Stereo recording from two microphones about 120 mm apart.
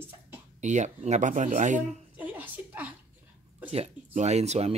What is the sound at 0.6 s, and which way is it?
Speech, 85° right.